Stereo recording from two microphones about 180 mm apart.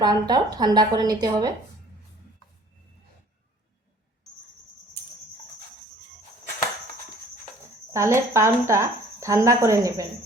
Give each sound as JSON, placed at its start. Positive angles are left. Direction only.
{"t": 0.0, "sound": "a woman's voice", "side_deg": -20}
{"t": 7.9, "sound": "speech", "side_deg": -15}